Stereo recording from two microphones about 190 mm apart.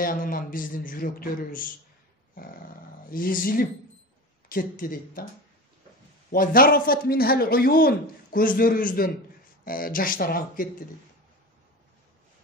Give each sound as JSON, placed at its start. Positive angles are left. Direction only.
{"t": 0.0, "sound": "a man's voice", "side_deg": 45}
{"t": 6.3, "sound": "a man's voice", "side_deg": 50}